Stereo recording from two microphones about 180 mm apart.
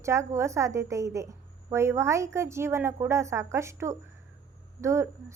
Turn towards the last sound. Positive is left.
turn(degrees=-15)  # may be behind; listen again after turning